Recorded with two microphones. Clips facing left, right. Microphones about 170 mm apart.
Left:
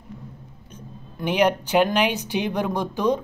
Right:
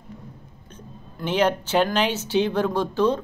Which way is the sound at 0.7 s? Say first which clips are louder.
Left 2 dB; 10° left (ahead or behind).